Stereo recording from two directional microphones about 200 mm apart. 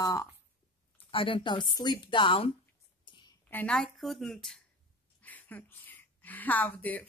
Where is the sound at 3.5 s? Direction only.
5° left (ahead or behind).